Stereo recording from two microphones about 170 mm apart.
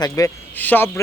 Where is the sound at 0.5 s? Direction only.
10° left (ahead or behind).